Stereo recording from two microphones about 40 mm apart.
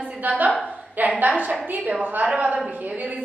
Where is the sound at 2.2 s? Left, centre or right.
Right.